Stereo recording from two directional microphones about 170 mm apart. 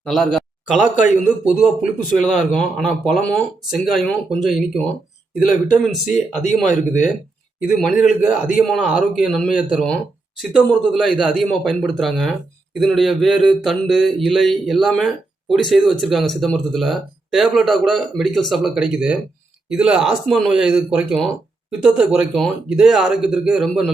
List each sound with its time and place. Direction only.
0.0 s speech: centre (ahead or behind)
0.9 s speech: 50° left (ahead or behind)
1.5 s speech: 5° right (ahead or behind)
6.4 s speech: 45° left (ahead or behind)
7.7 s speech: 5° left (ahead or behind)
7.9 s speech: 50° left (ahead or behind)
8.7 s speech: centre (ahead or behind)